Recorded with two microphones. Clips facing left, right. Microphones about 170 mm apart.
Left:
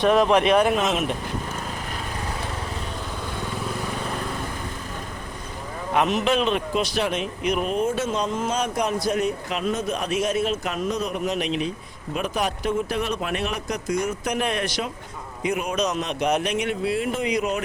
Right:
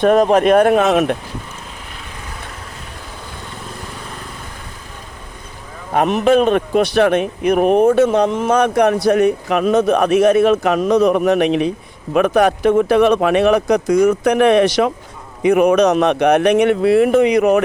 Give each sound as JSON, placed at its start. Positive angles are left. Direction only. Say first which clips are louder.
{"t": 0.0, "sound": "speech", "louder": "right 6 dB", "side_deg": -45}
{"t": 5.9, "sound": "a man's voice", "louder": "right 8 dB", "side_deg": -55}